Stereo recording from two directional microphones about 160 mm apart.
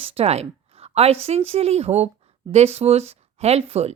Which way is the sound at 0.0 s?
40° right (ahead or behind).